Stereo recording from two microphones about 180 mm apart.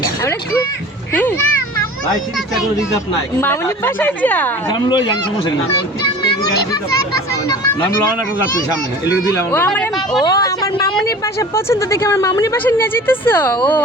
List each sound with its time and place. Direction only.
1.1 s speech: 10° left (ahead or behind)
3.4 s speech: 10° left (ahead or behind)
4.7 s speech: 25° left (ahead or behind)
7.8 s speech: 25° left (ahead or behind)
9.3 s speech: 10° left (ahead or behind)
10.2 s speech: 20° left (ahead or behind)